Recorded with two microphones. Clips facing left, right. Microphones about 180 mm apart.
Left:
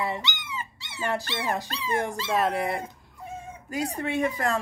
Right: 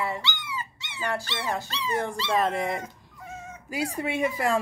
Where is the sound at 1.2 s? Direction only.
55° left (ahead or behind).